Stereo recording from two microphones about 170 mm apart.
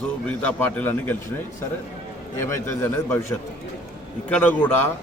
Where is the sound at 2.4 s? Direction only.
15° left (ahead or behind).